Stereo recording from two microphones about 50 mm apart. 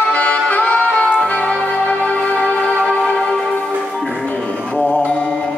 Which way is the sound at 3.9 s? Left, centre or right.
Centre.